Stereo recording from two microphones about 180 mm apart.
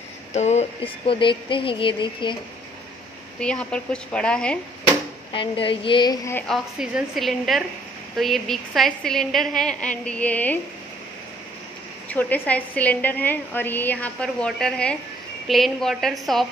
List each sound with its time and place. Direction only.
0.3 s speech: 40° left (ahead or behind)
3.3 s a woman's voice: 5° left (ahead or behind)
5.3 s speech: 30° left (ahead or behind)
6.3 s a woman's voice: centre (ahead or behind)
12.1 s a woman's voice: 10° left (ahead or behind)